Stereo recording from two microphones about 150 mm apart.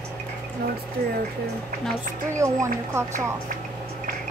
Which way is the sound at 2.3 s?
20° right (ahead or behind).